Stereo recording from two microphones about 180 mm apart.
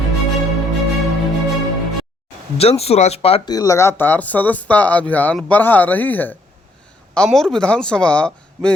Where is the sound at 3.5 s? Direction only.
20° left (ahead or behind).